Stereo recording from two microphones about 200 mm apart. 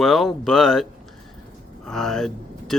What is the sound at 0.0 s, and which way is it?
Speech, centre (ahead or behind).